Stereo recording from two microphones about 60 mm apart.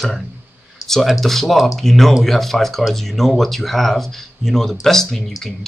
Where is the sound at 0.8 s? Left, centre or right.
Centre.